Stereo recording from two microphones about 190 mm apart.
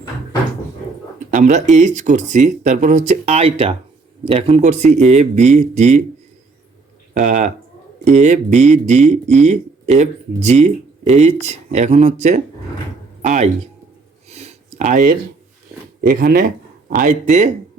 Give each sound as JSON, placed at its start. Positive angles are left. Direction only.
{"t": 1.3, "sound": "speech", "side_deg": -40}
{"t": 7.1, "sound": "speech", "side_deg": -40}
{"t": 14.3, "sound": "a sound", "side_deg": -35}
{"t": 16.0, "sound": "speech", "side_deg": -50}